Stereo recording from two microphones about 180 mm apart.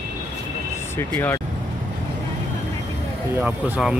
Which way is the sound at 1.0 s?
10° left (ahead or behind).